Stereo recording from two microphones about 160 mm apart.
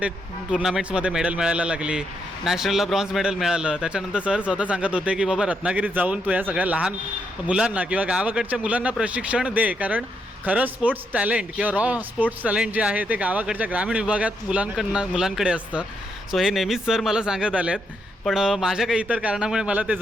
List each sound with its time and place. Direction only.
0.5 s a man's voice: 5° right (ahead or behind)